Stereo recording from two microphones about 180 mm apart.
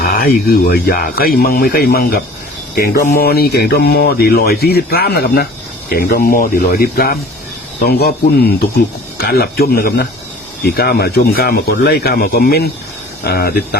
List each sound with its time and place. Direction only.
0.2 s speech: 55° left (ahead or behind)